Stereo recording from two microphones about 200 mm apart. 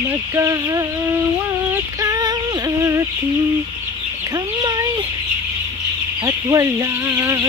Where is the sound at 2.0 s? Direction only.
20° right (ahead or behind).